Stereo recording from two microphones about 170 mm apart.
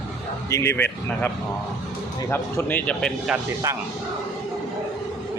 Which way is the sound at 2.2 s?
15° left (ahead or behind).